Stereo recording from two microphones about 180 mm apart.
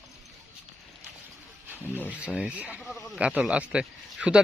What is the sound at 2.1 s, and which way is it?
Speech, 5° right (ahead or behind).